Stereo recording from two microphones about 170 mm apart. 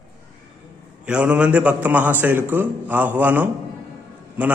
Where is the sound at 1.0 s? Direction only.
5° right (ahead or behind).